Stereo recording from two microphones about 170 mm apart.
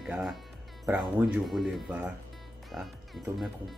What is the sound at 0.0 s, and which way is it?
Speech, centre (ahead or behind).